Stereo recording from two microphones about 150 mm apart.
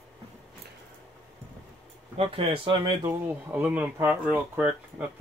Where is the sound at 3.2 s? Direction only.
10° right (ahead or behind).